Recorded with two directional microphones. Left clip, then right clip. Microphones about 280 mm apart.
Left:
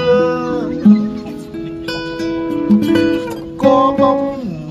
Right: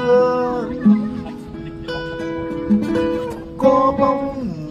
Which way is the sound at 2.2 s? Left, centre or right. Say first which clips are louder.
Left 7 dB; left.